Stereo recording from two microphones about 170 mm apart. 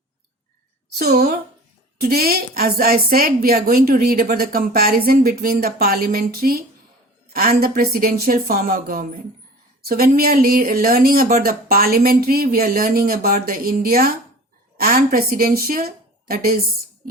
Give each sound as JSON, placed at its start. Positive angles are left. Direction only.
{"t": 0.9, "sound": "speech", "side_deg": -65}